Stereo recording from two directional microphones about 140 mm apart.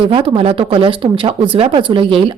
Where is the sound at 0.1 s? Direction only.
40° right (ahead or behind).